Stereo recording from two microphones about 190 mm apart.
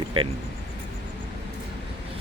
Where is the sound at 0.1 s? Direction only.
25° right (ahead or behind).